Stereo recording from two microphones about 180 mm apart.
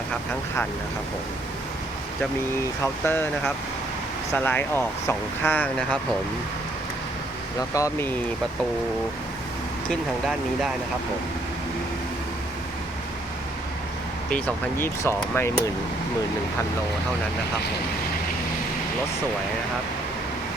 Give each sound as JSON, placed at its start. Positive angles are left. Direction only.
{"t": 2.8, "sound": "speech", "side_deg": 10}
{"t": 7.7, "sound": "speech", "side_deg": 20}
{"t": 9.9, "sound": "speech", "side_deg": 0}
{"t": 14.3, "sound": "speech", "side_deg": 5}